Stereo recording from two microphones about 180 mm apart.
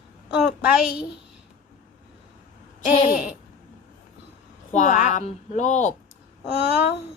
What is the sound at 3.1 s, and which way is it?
Speech, 5° right (ahead or behind).